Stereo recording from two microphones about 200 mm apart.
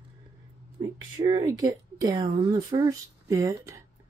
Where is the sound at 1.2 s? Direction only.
25° right (ahead or behind).